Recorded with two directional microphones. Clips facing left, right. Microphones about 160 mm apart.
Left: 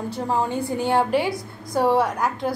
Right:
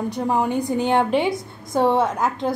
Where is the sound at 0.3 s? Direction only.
15° right (ahead or behind).